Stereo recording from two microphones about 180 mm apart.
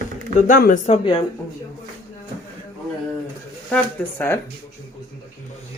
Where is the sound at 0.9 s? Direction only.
30° left (ahead or behind).